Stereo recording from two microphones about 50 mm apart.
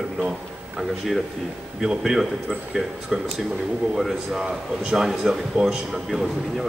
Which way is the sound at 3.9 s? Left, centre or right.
Centre.